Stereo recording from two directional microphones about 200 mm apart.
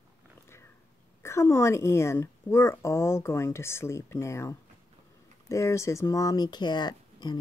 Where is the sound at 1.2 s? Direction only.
15° left (ahead or behind).